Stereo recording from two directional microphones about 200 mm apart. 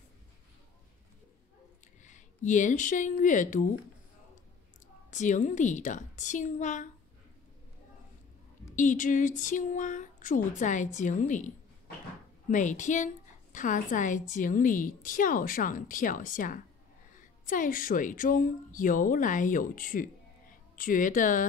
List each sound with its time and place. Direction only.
2.0 s speech: 40° left (ahead or behind)
5.1 s speech: 40° left (ahead or behind)
8.7 s a woman's voice: 40° left (ahead or behind)